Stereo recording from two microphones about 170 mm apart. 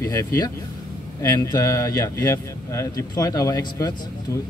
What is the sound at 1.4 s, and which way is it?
Speech, 20° left (ahead or behind).